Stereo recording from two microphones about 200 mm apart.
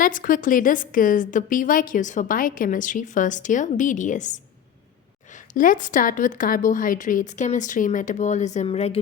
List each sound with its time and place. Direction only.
0.0 s a woman's voice: 45° left (ahead or behind)